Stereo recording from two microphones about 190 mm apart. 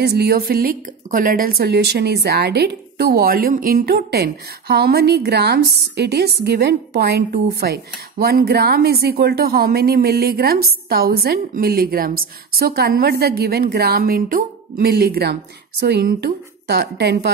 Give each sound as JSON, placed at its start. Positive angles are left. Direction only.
{"t": 0.0, "sound": "speech", "side_deg": -55}